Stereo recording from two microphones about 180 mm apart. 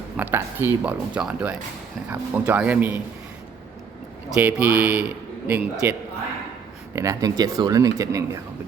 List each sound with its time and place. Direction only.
0.2 s speech: 10° right (ahead or behind)
4.4 s speech: 10° right (ahead or behind)